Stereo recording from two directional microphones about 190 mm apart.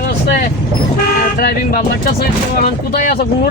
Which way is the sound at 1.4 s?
50° left (ahead or behind).